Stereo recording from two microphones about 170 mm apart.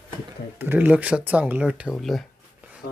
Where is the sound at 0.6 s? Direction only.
10° right (ahead or behind).